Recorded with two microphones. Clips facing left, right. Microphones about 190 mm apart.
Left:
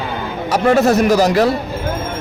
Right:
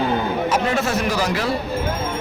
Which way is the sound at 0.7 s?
40° left (ahead or behind).